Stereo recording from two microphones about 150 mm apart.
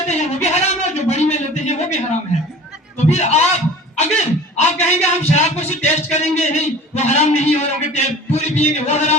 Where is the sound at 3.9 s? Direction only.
50° left (ahead or behind).